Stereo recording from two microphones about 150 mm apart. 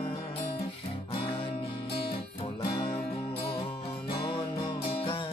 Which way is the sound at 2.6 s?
30° left (ahead or behind).